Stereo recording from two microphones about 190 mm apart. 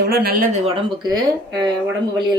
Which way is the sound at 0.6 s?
30° right (ahead or behind).